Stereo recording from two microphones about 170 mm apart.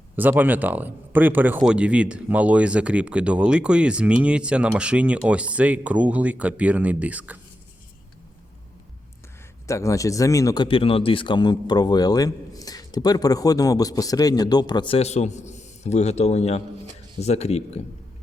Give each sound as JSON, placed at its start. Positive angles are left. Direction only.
{"t": 0.2, "sound": "speech", "side_deg": -10}
{"t": 9.6, "sound": "speech", "side_deg": 20}